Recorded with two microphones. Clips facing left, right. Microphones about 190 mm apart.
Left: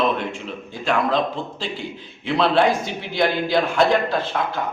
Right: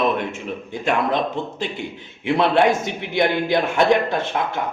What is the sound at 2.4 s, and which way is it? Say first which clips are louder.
A man's voice: right 1 dB; 20° right (ahead or behind).